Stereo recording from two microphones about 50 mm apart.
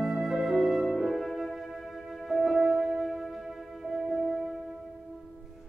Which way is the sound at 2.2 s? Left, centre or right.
Centre.